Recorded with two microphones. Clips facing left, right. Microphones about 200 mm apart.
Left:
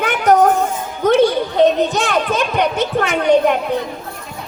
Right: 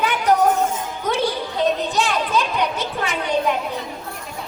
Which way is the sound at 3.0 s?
65° left (ahead or behind).